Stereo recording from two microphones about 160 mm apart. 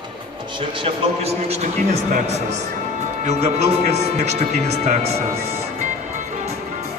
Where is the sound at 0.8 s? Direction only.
40° right (ahead or behind).